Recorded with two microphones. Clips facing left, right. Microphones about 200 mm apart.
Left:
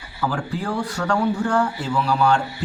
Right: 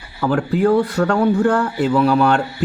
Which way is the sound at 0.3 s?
60° right (ahead or behind).